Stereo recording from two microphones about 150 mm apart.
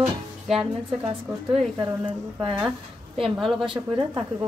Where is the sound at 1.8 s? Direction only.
30° right (ahead or behind).